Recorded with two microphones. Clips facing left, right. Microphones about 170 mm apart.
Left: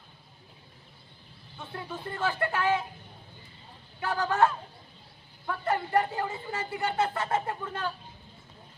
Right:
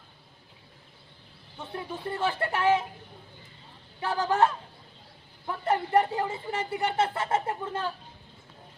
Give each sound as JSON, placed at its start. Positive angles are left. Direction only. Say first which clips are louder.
{"t": 1.7, "sound": "speech", "louder": "right 3 dB", "side_deg": -20}
{"t": 4.0, "sound": "speech", "louder": "right 1 dB", "side_deg": -25}
{"t": 5.5, "sound": "speech", "louder": "right 2 dB", "side_deg": -20}